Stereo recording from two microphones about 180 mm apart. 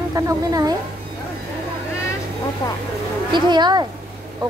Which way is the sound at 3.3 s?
25° right (ahead or behind).